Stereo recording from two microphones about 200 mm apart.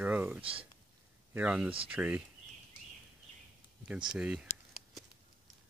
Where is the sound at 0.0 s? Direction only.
10° right (ahead or behind).